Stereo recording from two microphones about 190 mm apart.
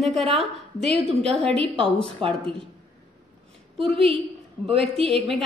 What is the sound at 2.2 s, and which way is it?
Speech, 30° right (ahead or behind).